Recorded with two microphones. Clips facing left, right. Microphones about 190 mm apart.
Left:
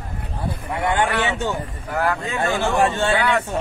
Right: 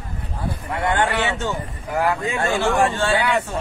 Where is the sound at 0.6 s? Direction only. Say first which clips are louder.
Even; 15° left (ahead or behind).